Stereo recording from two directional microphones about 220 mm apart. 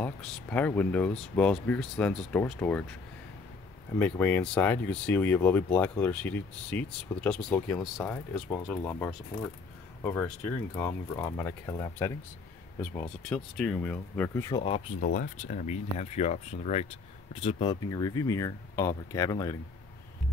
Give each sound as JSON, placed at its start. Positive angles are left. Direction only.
{"t": 0.0, "sound": "speech", "side_deg": 5}
{"t": 4.0, "sound": "speech", "side_deg": 5}
{"t": 15.0, "sound": "speech", "side_deg": 40}